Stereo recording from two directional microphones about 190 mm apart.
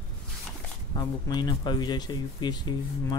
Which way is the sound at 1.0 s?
20° left (ahead or behind).